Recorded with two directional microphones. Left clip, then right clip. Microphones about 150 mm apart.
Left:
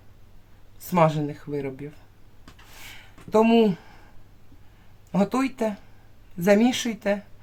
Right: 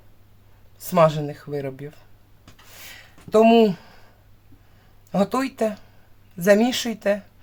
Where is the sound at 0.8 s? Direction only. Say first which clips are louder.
Right 3 dB; 25° right (ahead or behind).